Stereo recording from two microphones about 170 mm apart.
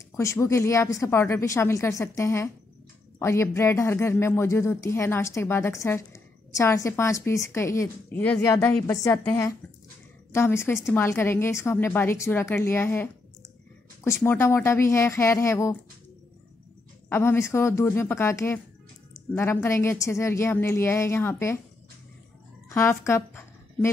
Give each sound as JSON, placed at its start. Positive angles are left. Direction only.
{"t": 0.1, "sound": "speech", "side_deg": 15}
{"t": 17.1, "sound": "speech", "side_deg": 15}
{"t": 22.7, "sound": "speech", "side_deg": 15}